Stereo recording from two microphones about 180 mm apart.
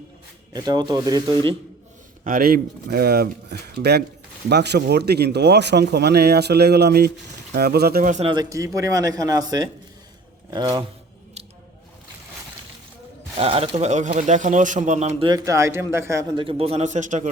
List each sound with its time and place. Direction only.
0.5 s a man's voice: 20° right (ahead or behind)
2.2 s speech: 55° right (ahead or behind)
8.3 s a man's voice: 20° right (ahead or behind)
13.4 s speech: 30° right (ahead or behind)
15.3 s a man's voice: 15° right (ahead or behind); by 17.2 s 40° right (ahead or behind)